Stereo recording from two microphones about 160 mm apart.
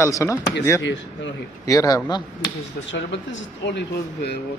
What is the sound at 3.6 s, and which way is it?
Speech, 90° left.